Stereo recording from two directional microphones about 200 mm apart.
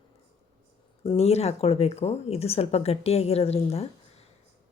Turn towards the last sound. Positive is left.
turn(degrees=30)  # may be behind; listen again after turning